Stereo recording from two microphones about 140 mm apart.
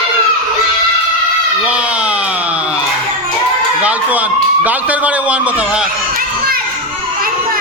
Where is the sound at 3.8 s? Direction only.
10° right (ahead or behind).